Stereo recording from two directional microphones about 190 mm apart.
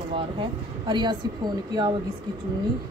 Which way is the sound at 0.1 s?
25° right (ahead or behind).